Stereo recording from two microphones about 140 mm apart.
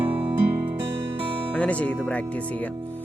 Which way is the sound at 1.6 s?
10° left (ahead or behind).